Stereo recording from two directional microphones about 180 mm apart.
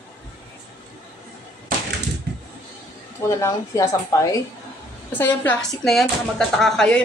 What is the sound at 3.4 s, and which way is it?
A woman's voice, 15° left (ahead or behind).